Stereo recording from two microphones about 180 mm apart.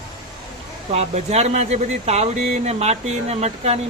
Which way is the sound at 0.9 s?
35° right (ahead or behind).